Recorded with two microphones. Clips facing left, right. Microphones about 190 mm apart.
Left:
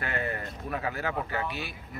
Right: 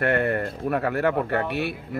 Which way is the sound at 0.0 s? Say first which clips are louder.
Right 10 dB; 65° right (ahead or behind).